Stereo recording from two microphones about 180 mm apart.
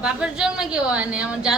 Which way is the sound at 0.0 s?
5° right (ahead or behind).